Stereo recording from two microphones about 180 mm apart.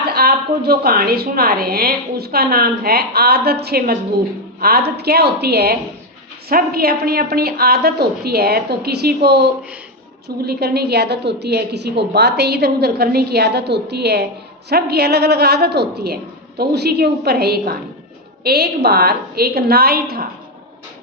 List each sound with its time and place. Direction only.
0.1 s a woman's voice: 60° right (ahead or behind)